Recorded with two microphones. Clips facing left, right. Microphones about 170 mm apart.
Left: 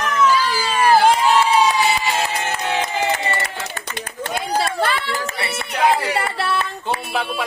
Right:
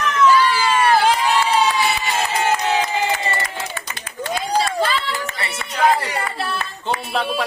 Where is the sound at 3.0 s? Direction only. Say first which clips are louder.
Left 1 dB; 60° left (ahead or behind).